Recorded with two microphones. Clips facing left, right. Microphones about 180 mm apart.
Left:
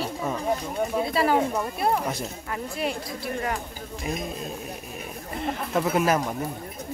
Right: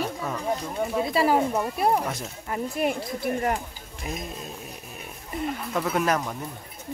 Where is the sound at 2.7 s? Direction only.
50° right (ahead or behind).